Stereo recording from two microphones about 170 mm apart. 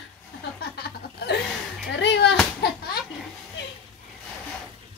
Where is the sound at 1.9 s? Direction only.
90° left.